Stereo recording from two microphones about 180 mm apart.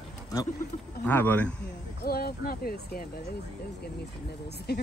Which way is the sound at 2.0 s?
55° left (ahead or behind).